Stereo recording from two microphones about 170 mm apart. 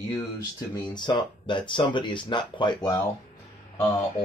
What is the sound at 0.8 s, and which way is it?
Speech, 25° left (ahead or behind).